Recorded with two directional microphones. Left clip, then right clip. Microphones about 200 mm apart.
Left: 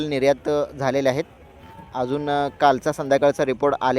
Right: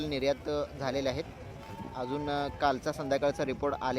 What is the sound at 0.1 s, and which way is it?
A man's voice, 35° left (ahead or behind).